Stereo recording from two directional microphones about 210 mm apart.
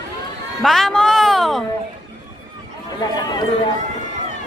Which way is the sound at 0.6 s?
Centre (ahead or behind).